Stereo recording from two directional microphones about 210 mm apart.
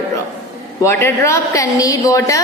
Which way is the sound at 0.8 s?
10° left (ahead or behind).